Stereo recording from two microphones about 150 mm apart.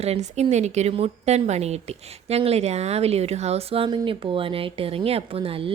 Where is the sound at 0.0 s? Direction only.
45° right (ahead or behind).